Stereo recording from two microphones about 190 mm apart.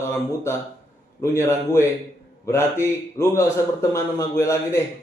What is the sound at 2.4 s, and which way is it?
Speech, 15° left (ahead or behind).